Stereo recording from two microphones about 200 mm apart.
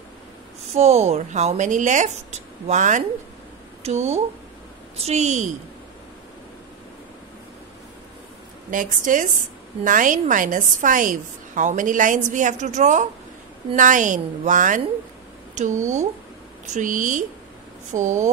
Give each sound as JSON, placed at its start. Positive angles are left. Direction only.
{"t": 0.7, "sound": "a woman's voice", "side_deg": -35}
{"t": 8.6, "sound": "a woman's voice", "side_deg": -40}